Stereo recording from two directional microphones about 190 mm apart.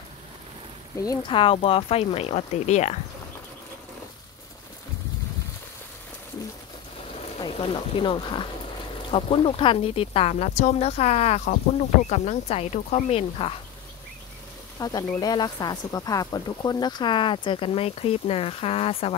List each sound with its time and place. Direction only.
0.9 s speech: 20° left (ahead or behind); by 3.0 s 35° left (ahead or behind)
7.3 s speech: 25° left (ahead or behind)
14.8 s speech: 20° left (ahead or behind)